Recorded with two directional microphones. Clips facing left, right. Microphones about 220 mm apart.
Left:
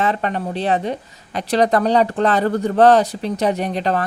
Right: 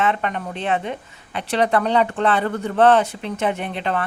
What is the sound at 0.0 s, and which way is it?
A woman's voice, 35° left (ahead or behind).